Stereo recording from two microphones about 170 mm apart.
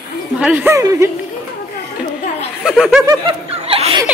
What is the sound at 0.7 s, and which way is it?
Speech, 20° right (ahead or behind).